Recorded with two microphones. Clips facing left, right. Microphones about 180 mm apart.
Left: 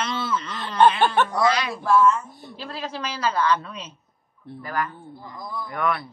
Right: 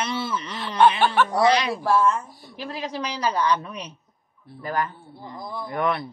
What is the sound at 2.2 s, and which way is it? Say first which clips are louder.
Speech: left 4 dB; 20° left (ahead or behind).